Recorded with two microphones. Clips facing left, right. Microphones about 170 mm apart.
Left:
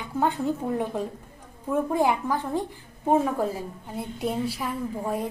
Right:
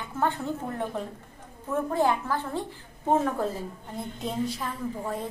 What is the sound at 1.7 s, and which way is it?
A woman's voice, 15° left (ahead or behind).